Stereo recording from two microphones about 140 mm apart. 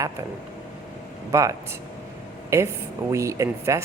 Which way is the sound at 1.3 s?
25° right (ahead or behind).